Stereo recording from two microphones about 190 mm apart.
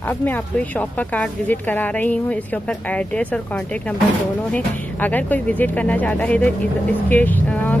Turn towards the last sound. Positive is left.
turn(degrees=10)  # may be behind; listen again after turning